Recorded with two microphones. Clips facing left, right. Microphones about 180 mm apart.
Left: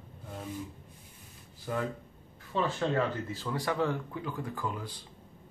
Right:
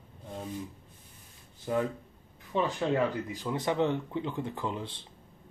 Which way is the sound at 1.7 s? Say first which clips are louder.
Right 4 dB; 20° right (ahead or behind).